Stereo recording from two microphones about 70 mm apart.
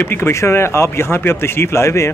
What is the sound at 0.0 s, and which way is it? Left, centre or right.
Speech, left.